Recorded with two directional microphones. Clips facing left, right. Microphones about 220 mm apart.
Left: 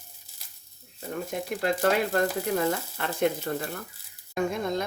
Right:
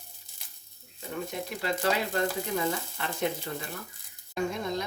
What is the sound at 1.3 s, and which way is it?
Speech, 50° left (ahead or behind).